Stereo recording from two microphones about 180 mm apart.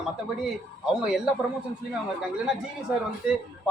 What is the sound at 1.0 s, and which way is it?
Speech, 5° right (ahead or behind).